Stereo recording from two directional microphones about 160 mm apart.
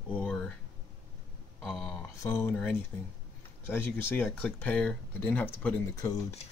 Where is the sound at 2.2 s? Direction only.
15° left (ahead or behind).